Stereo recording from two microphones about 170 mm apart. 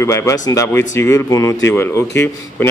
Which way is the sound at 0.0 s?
15° left (ahead or behind).